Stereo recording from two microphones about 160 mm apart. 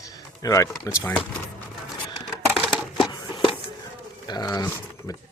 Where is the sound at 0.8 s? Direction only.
20° left (ahead or behind).